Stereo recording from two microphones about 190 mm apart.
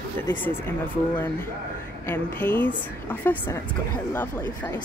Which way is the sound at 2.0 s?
10° left (ahead or behind).